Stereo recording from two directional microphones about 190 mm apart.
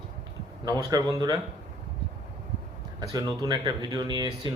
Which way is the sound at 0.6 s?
20° right (ahead or behind).